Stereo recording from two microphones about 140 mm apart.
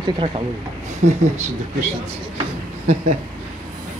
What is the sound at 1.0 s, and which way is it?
Speech, 60° right (ahead or behind).